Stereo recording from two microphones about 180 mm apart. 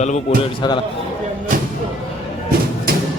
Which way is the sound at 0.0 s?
40° left (ahead or behind).